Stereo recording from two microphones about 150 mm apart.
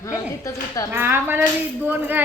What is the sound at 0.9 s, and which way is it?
Speech, 15° right (ahead or behind).